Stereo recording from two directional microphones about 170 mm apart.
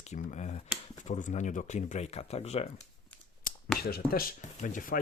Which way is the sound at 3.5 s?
55° left (ahead or behind).